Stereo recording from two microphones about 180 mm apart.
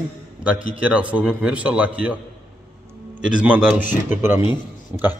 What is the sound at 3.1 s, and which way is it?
A man's voice, 5° right (ahead or behind).